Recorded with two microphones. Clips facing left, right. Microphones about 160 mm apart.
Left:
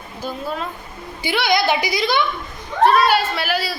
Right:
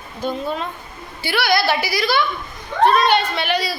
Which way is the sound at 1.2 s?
20° left (ahead or behind).